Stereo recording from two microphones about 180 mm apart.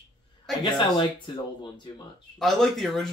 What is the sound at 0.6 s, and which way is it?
Speech, 25° left (ahead or behind).